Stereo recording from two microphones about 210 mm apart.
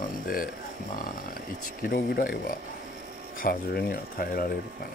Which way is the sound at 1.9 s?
45° left (ahead or behind).